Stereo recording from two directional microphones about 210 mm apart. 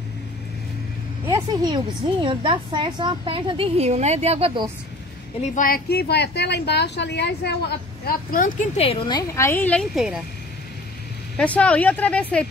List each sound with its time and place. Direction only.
1.2 s vehicle: 15° right (ahead or behind)
2.2 s a woman's voice: 25° right (ahead or behind)
5.4 s speech: 40° left (ahead or behind)
8.0 s speech: 40° left (ahead or behind); by 9.2 s 25° left (ahead or behind)
9.3 s speech: 10° left (ahead or behind)
11.3 s speech: 5° left (ahead or behind)